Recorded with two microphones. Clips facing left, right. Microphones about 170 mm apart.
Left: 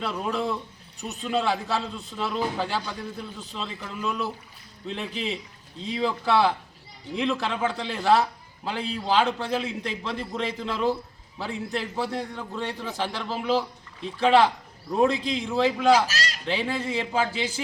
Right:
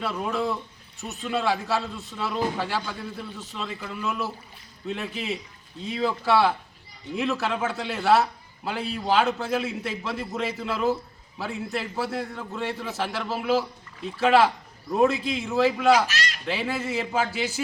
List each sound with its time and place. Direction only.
0.0 s a man's voice: centre (ahead or behind)
15.9 s speech: 35° left (ahead or behind)
16.5 s a man's voice: 5° right (ahead or behind)